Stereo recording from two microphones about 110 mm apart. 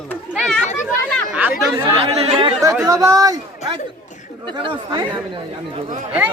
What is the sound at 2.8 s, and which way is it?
Speech, 30° right (ahead or behind).